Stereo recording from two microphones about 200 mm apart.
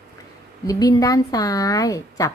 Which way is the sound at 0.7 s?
20° left (ahead or behind).